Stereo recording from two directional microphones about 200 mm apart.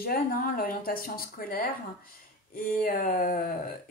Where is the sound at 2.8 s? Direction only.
45° left (ahead or behind).